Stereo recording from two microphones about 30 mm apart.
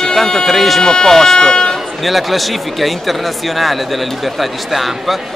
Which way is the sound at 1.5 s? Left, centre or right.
Left.